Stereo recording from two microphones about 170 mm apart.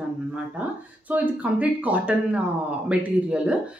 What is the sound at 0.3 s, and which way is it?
Speech, 10° right (ahead or behind).